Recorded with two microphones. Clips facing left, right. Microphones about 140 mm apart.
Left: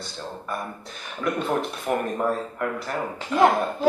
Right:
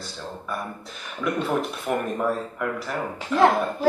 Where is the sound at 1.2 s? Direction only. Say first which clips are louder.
Even; centre (ahead or behind).